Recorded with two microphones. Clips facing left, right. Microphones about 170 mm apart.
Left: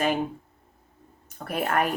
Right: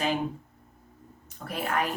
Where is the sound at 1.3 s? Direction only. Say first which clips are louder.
Left 4 dB; 55° left (ahead or behind).